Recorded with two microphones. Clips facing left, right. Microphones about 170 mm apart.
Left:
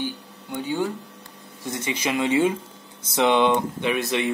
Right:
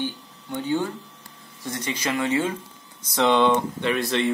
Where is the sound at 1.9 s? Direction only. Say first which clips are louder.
Left 2 dB; 15° left (ahead or behind).